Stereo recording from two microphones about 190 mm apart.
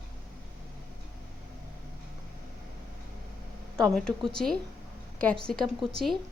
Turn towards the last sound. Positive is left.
turn(degrees=0)  # may be behind; listen again after turning